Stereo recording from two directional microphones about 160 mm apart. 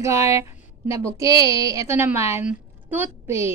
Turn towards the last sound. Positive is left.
turn(degrees=-15)  # may be behind; listen again after turning